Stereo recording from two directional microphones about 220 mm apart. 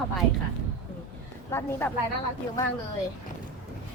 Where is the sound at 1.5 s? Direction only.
10° left (ahead or behind).